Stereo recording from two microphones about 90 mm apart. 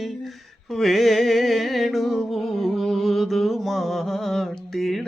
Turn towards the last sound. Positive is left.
turn(degrees=0)  # may be behind; listen again after turning